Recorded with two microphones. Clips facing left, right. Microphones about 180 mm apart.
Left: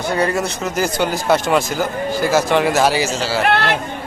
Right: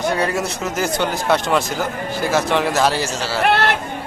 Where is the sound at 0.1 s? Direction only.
Centre (ahead or behind).